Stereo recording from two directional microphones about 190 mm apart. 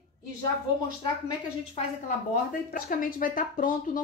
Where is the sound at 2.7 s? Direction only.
45° left (ahead or behind).